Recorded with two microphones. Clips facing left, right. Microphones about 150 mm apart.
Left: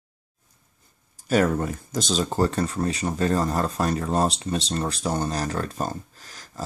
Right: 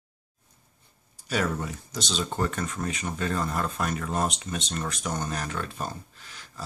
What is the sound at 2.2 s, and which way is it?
Speech, 35° left (ahead or behind).